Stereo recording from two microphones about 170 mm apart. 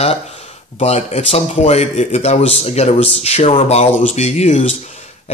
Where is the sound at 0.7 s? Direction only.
40° left (ahead or behind).